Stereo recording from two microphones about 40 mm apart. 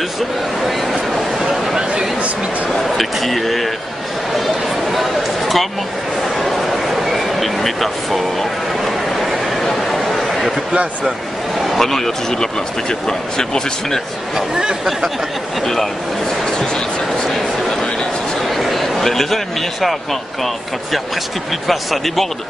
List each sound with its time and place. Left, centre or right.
1.1 s a sound: centre
3.0 s a man's voice: centre
4.3 s a sound: centre
11.6 s speech: centre
14.3 s speech: centre
15.6 s speech: centre
18.4 s a man's voice: centre